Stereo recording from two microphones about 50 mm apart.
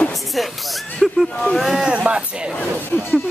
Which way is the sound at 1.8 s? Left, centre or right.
Right.